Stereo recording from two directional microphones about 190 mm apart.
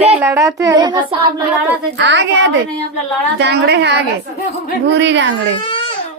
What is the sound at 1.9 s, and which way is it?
A woman's voice, 70° right (ahead or behind).